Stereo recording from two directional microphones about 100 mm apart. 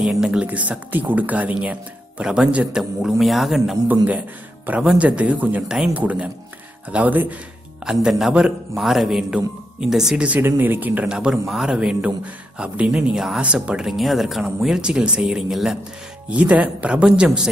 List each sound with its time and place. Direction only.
0.0 s speech: 5° right (ahead or behind)
3.8 s speech: 15° right (ahead or behind)
7.8 s speech: 5° right (ahead or behind)
11.1 s speech: 5° right (ahead or behind)